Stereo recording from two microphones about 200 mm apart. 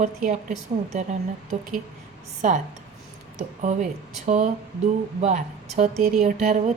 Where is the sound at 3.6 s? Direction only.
40° right (ahead or behind).